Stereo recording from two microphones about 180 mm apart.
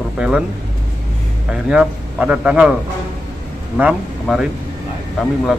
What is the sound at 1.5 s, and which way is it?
A man's voice, 5° right (ahead or behind).